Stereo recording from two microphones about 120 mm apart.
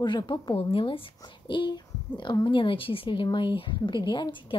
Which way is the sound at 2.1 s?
40° left (ahead or behind).